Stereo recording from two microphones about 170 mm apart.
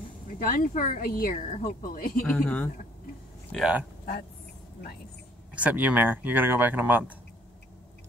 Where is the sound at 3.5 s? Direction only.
5° right (ahead or behind).